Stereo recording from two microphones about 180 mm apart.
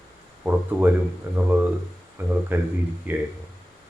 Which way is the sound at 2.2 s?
10° right (ahead or behind).